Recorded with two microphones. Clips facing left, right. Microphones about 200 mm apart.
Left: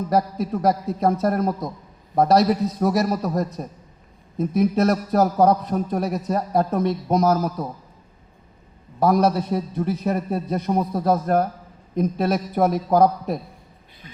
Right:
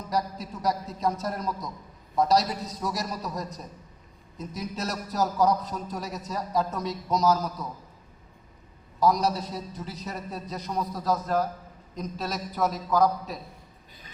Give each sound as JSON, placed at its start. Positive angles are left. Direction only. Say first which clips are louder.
{"t": 0.1, "sound": "a man's voice", "louder": "left 7 dB", "side_deg": 55}
{"t": 9.0, "sound": "a man's voice", "louder": "left 6 dB", "side_deg": 60}